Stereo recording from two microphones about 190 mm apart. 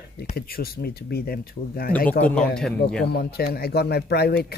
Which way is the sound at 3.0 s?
55° left (ahead or behind).